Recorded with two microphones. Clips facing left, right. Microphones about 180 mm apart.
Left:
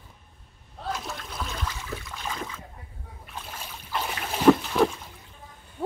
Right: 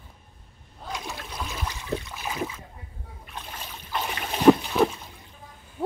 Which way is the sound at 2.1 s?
10° right (ahead or behind).